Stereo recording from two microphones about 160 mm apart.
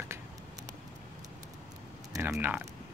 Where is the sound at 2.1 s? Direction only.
15° right (ahead or behind).